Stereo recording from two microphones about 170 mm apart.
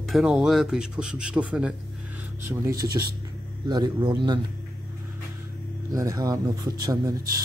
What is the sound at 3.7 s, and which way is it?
Speech, 25° right (ahead or behind).